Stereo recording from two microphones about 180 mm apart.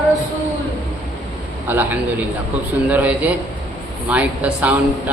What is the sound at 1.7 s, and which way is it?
A man's voice, 10° right (ahead or behind).